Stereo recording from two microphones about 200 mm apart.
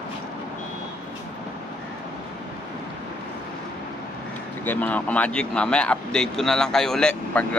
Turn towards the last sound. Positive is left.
turn(degrees=5)  # may be behind; listen again after turning